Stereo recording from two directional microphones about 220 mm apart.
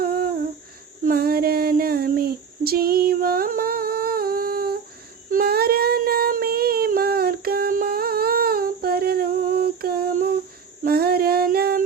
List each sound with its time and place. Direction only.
0.0 s humming: 40° right (ahead or behind)
1.0 s child singing: 45° right (ahead or behind)
10.8 s female singing: 45° right (ahead or behind)